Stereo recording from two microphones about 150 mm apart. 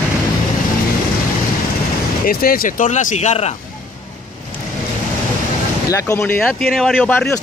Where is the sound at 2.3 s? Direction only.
75° left (ahead or behind); by 3.6 s 45° left (ahead or behind).